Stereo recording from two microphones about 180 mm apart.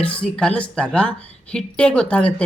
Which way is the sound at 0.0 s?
5° left (ahead or behind).